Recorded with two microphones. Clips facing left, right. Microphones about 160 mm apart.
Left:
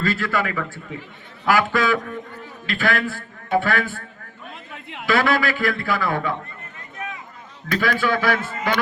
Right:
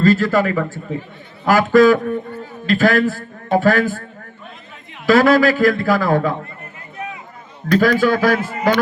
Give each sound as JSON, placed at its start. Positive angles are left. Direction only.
{"t": 0.0, "sound": "a man's voice", "side_deg": -40}
{"t": 4.7, "sound": "a sound", "side_deg": 65}
{"t": 5.0, "sound": "a man's voice", "side_deg": -40}
{"t": 7.7, "sound": "a man's voice", "side_deg": -40}